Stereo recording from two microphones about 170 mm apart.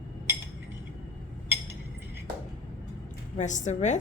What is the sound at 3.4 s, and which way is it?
Speech, 45° left (ahead or behind).